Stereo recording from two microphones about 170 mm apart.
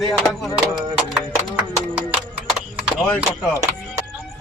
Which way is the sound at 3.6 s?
15° right (ahead or behind).